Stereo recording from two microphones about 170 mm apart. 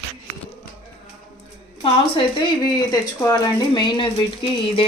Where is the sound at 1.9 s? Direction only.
35° left (ahead or behind).